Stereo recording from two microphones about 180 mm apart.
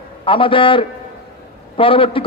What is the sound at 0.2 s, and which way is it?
A man's voice, 30° left (ahead or behind).